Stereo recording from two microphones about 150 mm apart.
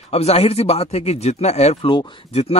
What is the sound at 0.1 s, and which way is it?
Speech, 45° left (ahead or behind).